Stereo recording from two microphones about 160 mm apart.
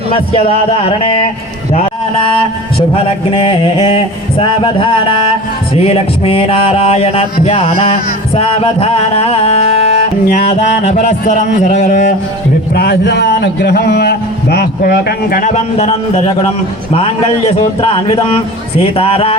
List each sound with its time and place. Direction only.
0.1 s a man's voice: 35° left (ahead or behind)
1.7 s a sound: 40° left (ahead or behind)
2.9 s a man's voice: 35° left (ahead or behind)
12.7 s a man's voice: 75° left (ahead or behind); by 19.4 s 40° left (ahead or behind)